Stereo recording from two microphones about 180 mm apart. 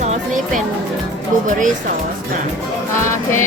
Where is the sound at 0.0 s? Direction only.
40° right (ahead or behind).